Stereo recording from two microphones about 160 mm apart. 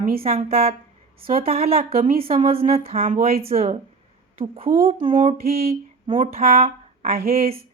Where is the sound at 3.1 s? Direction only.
65° right (ahead or behind).